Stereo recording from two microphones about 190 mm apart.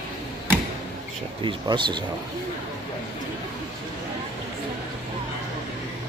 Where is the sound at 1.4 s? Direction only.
25° right (ahead or behind).